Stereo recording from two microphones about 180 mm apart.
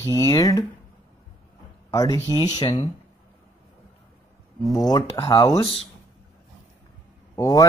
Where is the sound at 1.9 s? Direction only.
20° left (ahead or behind).